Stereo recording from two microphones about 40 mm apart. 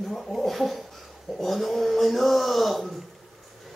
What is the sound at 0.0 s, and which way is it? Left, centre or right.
Speech, centre.